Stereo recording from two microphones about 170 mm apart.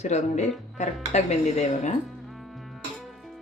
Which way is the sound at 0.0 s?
40° left (ahead or behind).